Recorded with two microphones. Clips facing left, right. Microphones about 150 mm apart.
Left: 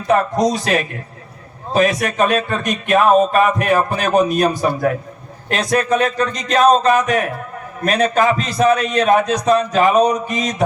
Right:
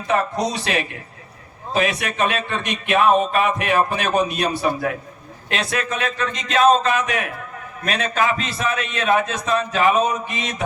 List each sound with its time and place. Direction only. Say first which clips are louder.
0.1 s speech: left 6 dB; 45° left (ahead or behind)